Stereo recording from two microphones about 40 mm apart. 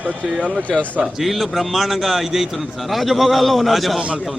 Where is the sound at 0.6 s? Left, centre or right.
Left.